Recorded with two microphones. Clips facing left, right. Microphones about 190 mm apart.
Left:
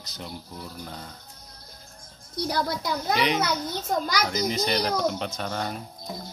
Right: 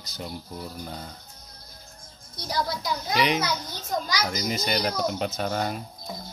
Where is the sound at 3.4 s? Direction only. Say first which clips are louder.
Left 3 dB; 55° left (ahead or behind).